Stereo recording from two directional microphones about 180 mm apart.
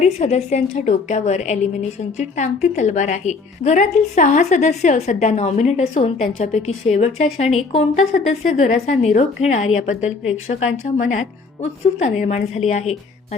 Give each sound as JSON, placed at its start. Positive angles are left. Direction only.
{"t": 0.0, "sound": "a woman's voice", "side_deg": 40}